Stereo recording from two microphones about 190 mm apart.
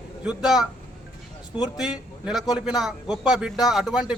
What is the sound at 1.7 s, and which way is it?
A man's voice, 5° right (ahead or behind).